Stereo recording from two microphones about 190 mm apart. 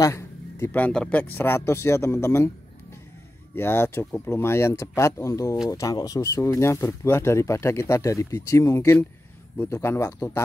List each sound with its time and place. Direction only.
0.0 s a man's voice: 15° left (ahead or behind)
3.5 s speech: 10° left (ahead or behind)